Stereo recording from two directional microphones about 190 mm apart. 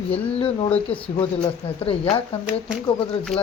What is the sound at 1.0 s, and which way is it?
Speech, 30° left (ahead or behind).